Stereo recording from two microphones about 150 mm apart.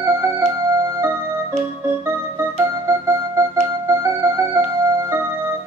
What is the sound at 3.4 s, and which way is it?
Music, 15° right (ahead or behind).